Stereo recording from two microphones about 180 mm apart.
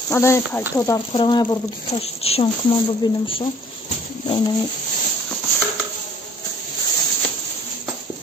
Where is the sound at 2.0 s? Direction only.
35° left (ahead or behind).